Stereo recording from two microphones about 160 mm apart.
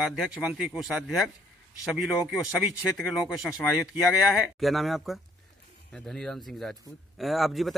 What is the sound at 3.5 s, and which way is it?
Speech, 5° left (ahead or behind).